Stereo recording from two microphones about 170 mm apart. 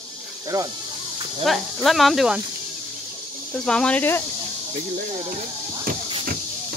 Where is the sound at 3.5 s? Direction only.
5° left (ahead or behind).